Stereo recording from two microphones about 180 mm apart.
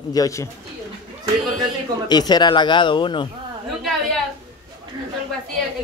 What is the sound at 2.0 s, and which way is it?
A man's voice, 25° left (ahead or behind).